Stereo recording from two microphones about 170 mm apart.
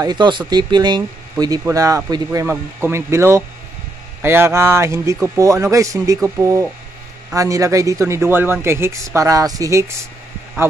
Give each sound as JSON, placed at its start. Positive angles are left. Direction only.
{"t": 0.0, "sound": "speech", "side_deg": -25}